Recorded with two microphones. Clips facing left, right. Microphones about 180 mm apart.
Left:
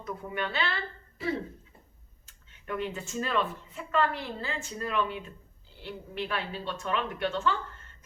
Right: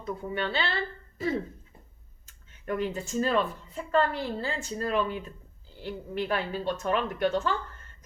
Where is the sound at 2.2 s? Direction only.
40° right (ahead or behind).